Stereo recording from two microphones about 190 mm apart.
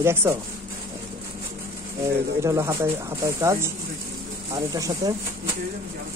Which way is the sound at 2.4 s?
15° right (ahead or behind).